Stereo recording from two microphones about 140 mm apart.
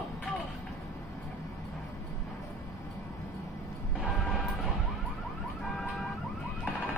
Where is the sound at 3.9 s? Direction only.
Centre (ahead or behind).